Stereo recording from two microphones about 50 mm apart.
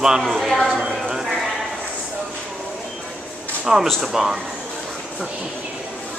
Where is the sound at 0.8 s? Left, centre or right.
Centre.